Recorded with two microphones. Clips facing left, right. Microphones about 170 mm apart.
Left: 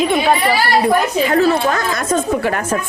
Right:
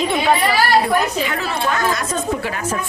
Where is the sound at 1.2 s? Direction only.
40° left (ahead or behind); by 2.7 s 55° left (ahead or behind).